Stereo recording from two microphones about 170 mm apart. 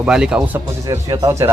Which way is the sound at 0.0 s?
5° right (ahead or behind).